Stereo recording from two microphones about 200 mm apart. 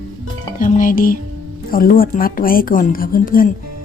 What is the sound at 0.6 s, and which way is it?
Speech, 40° left (ahead or behind).